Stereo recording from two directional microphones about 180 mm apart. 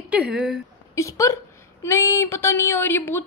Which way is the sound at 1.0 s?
15° left (ahead or behind).